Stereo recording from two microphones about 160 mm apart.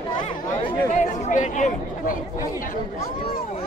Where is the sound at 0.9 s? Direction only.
50° left (ahead or behind).